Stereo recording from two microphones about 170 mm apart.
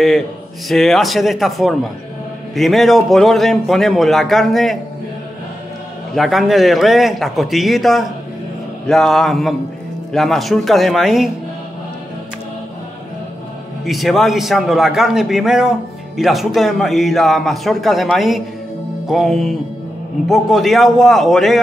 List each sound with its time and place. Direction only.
0.7 s a man's voice: centre (ahead or behind)
6.1 s a man's voice: centre (ahead or behind)
13.8 s a man's voice: centre (ahead or behind)